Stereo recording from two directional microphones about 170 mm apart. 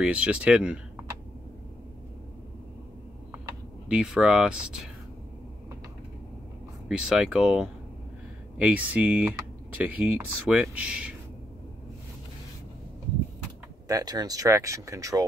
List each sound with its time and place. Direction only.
0.0 s speech: 5° right (ahead or behind)
3.3 s a sound: 15° right (ahead or behind)
4.0 s speech: 5° right (ahead or behind)
6.9 s speech: 5° right (ahead or behind)
13.8 s speech: 20° right (ahead or behind)